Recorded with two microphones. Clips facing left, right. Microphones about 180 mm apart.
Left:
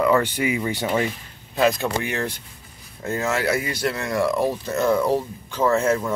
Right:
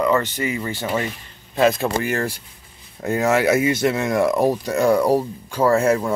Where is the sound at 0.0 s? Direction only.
10° left (ahead or behind); by 2.3 s 5° right (ahead or behind).